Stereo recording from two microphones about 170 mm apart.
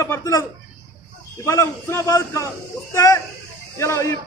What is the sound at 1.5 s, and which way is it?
A man's voice, 15° left (ahead or behind).